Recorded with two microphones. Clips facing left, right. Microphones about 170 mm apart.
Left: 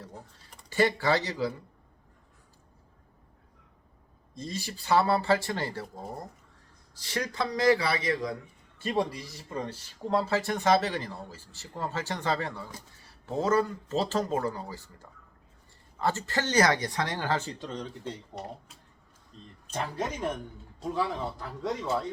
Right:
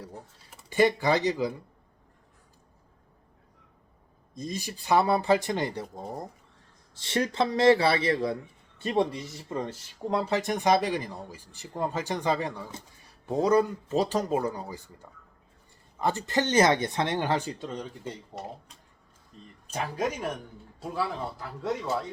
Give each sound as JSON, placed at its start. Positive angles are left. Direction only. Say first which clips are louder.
{"t": 0.7, "sound": "speech", "louder": "right 2 dB", "side_deg": -15}
{"t": 4.4, "sound": "speech", "louder": "right 2 dB", "side_deg": -15}
{"t": 6.9, "sound": "a man's voice", "louder": "right 5 dB", "side_deg": -25}
{"t": 10.1, "sound": "speech", "louder": "even", "side_deg": -15}
{"t": 19.3, "sound": "a man's voice", "louder": "right 1 dB", "side_deg": -10}